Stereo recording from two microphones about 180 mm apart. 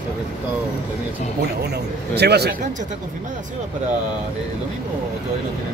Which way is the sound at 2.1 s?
65° right (ahead or behind).